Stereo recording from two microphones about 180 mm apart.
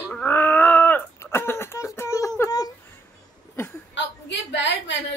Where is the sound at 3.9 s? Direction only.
80° left.